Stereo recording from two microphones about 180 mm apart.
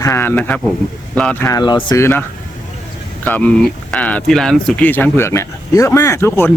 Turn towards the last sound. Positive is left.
turn(degrees=15)  # may be behind; listen again after turning